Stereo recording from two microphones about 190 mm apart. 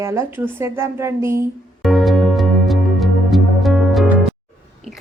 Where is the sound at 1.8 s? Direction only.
Centre (ahead or behind).